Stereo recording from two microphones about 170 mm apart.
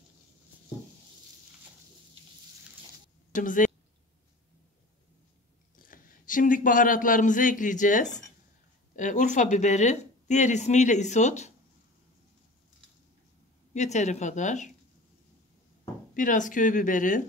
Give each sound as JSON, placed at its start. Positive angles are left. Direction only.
{"t": 3.3, "sound": "a woman's voice", "side_deg": 50}
{"t": 5.8, "sound": "speech", "side_deg": 55}
{"t": 13.7, "sound": "speech", "side_deg": 45}
{"t": 16.2, "sound": "speech", "side_deg": 50}